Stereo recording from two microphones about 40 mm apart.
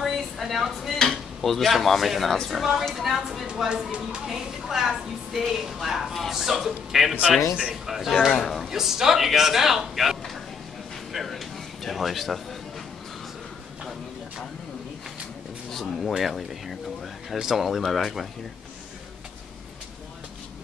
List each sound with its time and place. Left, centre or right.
0.0 s a sound: centre
0.9 s drawer open or close: centre
1.4 s speech: centre
3.5 s speech: centre
4.3 s a woman's voice: centre
8.4 s speech: centre
8.6 s a man's voice: centre
11.1 s a sound: centre
15.7 s speech: centre